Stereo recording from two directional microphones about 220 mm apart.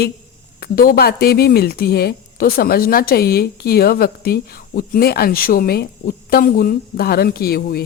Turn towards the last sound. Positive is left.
turn(degrees=45)  # may be behind; listen again after turning